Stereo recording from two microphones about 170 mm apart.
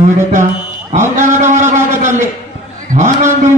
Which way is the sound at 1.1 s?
45° right (ahead or behind).